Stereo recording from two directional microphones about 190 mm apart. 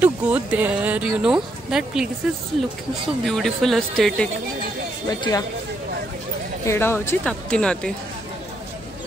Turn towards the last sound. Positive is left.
turn(degrees=5)  # may be behind; listen again after turning